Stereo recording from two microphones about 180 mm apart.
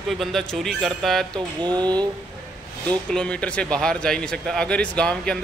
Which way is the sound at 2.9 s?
5° left (ahead or behind).